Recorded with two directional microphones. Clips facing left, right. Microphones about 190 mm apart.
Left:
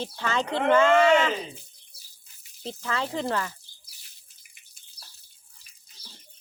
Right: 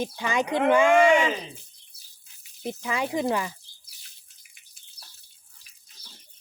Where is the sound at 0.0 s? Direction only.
15° right (ahead or behind).